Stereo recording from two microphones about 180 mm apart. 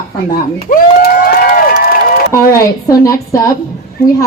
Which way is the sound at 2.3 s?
15° left (ahead or behind).